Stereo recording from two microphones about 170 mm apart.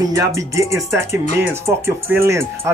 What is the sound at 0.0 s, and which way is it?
Speech, 20° right (ahead or behind).